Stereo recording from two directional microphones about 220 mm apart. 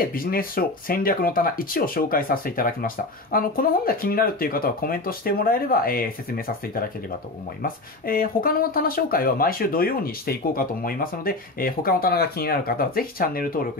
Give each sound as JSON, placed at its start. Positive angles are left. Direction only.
{"t": 0.0, "sound": "speech", "side_deg": 40}